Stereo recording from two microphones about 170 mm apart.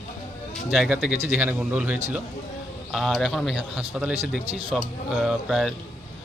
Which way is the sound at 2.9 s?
Centre (ahead or behind).